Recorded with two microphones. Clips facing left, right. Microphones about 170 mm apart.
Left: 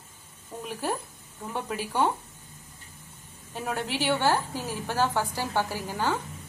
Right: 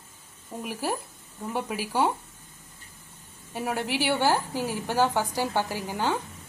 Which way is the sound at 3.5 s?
10° right (ahead or behind).